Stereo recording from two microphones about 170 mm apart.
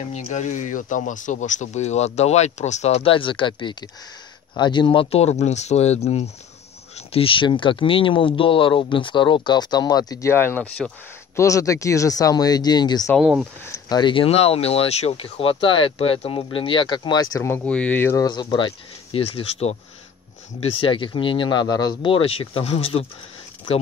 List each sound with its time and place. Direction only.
0.1 s speech: 45° left (ahead or behind); by 13.1 s 25° left (ahead or behind)
13.2 s speech: 5° right (ahead or behind)
13.8 s speech: 25° left (ahead or behind)